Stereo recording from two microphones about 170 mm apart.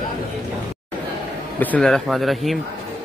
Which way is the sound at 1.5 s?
5° left (ahead or behind).